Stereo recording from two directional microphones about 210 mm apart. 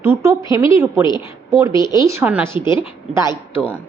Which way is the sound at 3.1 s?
10° right (ahead or behind).